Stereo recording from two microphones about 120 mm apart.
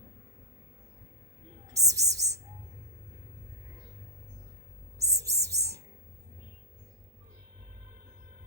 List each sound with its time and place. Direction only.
1.6 s speech: 30° right (ahead or behind)
4.9 s music: 25° right (ahead or behind)